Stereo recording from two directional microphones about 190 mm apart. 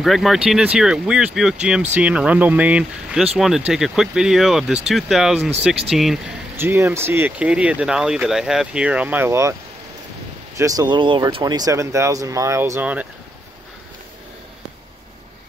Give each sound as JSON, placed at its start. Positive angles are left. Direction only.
{"t": 0.0, "sound": "speech", "side_deg": 0}
{"t": 6.5, "sound": "speech", "side_deg": -15}
{"t": 10.6, "sound": "speech", "side_deg": -20}